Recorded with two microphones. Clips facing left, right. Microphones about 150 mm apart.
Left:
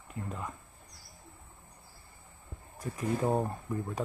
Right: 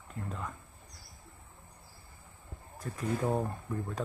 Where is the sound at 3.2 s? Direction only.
15° left (ahead or behind).